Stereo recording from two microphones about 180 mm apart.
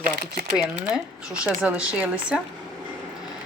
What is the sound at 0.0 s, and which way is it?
Speech, 55° right (ahead or behind).